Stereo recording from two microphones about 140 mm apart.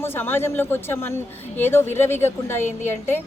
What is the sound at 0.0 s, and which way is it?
A woman's voice, 15° left (ahead or behind).